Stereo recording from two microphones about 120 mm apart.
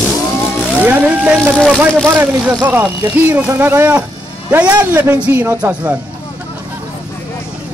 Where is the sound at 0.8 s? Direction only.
15° right (ahead or behind).